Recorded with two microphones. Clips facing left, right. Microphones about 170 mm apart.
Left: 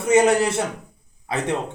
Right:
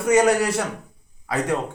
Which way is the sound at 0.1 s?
25° left (ahead or behind).